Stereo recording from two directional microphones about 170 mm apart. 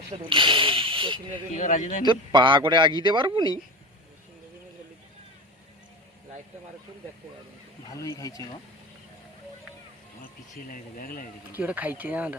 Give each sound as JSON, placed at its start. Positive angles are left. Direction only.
{"t": 0.1, "sound": "speech", "side_deg": -30}
{"t": 1.5, "sound": "speech", "side_deg": 45}
{"t": 2.0, "sound": "speech", "side_deg": -25}
{"t": 7.9, "sound": "speech", "side_deg": 20}
{"t": 10.7, "sound": "speech", "side_deg": 55}
{"t": 11.5, "sound": "speech", "side_deg": -10}